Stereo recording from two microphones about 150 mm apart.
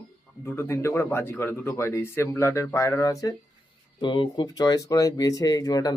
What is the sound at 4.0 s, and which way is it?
Speech, 30° left (ahead or behind).